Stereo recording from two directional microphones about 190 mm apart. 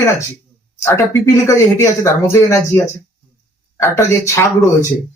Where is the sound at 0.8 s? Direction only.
15° left (ahead or behind).